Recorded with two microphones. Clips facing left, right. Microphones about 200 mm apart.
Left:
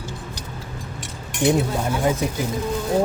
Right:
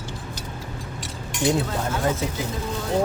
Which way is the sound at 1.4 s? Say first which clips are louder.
Left 3 dB; 15° left (ahead or behind).